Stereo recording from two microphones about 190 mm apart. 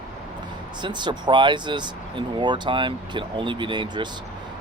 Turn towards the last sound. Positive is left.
turn(degrees=-25)  # may be behind; listen again after turning